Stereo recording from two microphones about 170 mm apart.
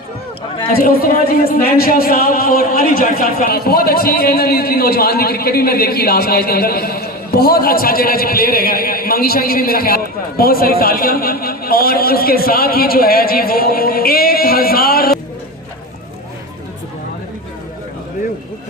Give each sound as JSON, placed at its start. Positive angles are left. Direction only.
{"t": 0.8, "sound": "speech", "side_deg": 55}